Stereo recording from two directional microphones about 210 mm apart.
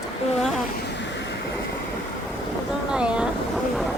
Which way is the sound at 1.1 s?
55° left (ahead or behind).